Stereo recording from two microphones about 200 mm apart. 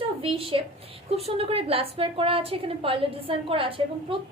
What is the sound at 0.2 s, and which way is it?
A woman's voice, 30° right (ahead or behind).